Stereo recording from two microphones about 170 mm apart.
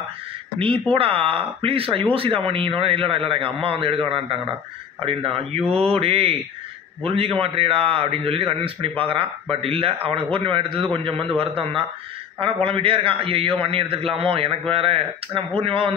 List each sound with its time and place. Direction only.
0.6 s a man's voice: 35° right (ahead or behind)